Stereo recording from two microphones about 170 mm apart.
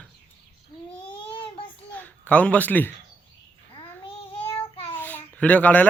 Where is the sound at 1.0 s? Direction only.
30° left (ahead or behind).